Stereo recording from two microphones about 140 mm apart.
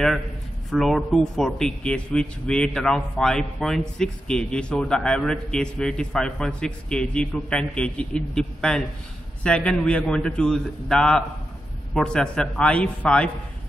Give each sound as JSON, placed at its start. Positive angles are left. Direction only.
{"t": 0.7, "sound": "a man's voice", "side_deg": 0}